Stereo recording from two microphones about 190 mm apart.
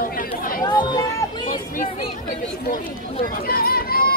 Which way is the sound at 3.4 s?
50° left (ahead or behind).